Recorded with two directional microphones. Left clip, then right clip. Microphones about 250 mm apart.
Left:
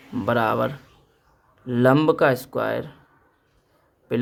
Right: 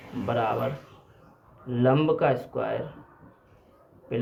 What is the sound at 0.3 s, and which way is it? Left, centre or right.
Speech, left.